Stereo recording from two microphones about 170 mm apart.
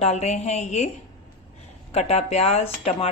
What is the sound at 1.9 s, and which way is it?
A woman's voice, 40° left (ahead or behind).